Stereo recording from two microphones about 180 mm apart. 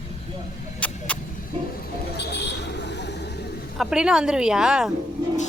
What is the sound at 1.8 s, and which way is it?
Vehicle, 65° left (ahead or behind).